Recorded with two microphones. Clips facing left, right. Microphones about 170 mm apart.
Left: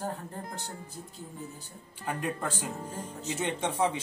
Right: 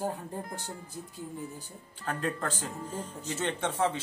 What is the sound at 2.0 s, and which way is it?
Speech, 10° left (ahead or behind).